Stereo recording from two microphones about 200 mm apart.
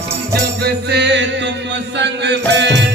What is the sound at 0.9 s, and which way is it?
Music, 60° right (ahead or behind).